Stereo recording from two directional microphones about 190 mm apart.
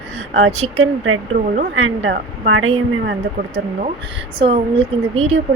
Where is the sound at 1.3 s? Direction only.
50° right (ahead or behind).